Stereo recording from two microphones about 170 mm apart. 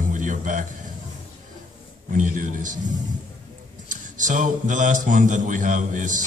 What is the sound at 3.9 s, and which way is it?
A man's voice, 50° right (ahead or behind).